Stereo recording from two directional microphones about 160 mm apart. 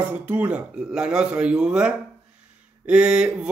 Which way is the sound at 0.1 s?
10° right (ahead or behind).